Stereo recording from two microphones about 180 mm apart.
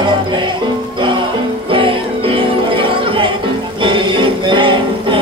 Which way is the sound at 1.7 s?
30° right (ahead or behind).